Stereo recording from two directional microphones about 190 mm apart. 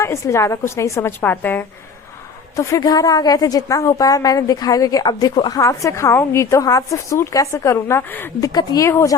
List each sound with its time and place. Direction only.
0.0 s a woman's voice: 15° left (ahead or behind)